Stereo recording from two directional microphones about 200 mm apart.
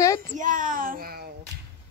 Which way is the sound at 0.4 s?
40° right (ahead or behind).